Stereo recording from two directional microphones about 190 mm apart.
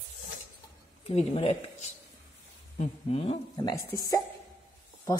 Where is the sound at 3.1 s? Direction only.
30° left (ahead or behind).